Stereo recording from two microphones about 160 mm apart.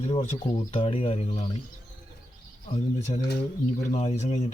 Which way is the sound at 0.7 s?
35° left (ahead or behind).